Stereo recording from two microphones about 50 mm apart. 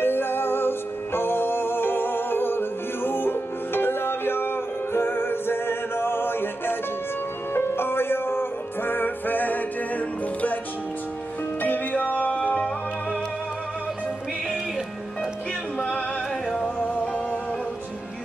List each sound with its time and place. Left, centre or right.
0.0 s music: left
11.6 s music: left
16.4 s music: centre
16.8 s music: left